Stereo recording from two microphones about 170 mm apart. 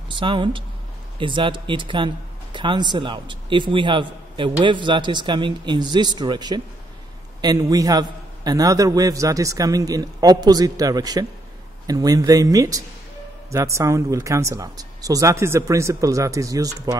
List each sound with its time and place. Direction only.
0.1 s speech: 30° right (ahead or behind)